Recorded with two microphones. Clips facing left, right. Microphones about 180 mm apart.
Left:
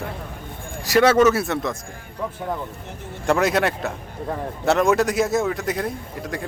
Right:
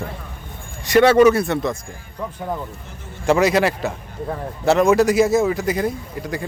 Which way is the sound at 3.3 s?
Centre (ahead or behind).